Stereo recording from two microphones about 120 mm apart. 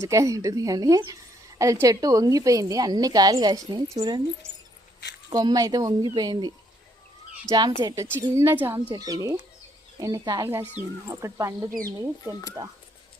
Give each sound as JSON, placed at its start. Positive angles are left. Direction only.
{"t": 0.0, "sound": "a woman's voice", "side_deg": -25}
{"t": 5.3, "sound": "a woman's voice", "side_deg": -30}
{"t": 7.8, "sound": "a woman's voice", "side_deg": -35}
{"t": 8.1, "sound": "speech", "side_deg": -20}
{"t": 8.9, "sound": "a woman's voice", "side_deg": -35}